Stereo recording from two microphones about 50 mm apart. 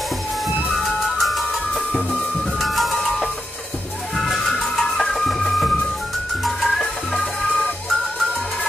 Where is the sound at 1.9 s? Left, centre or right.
Centre.